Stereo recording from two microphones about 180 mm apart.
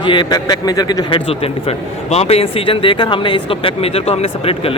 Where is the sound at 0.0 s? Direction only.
25° left (ahead or behind).